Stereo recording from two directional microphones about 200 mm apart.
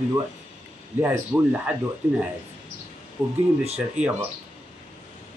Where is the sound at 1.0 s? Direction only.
10° right (ahead or behind).